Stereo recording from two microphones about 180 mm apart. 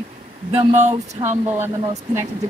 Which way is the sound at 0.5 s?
35° right (ahead or behind).